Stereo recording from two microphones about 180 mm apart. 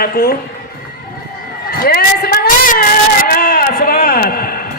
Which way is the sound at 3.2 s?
55° left (ahead or behind).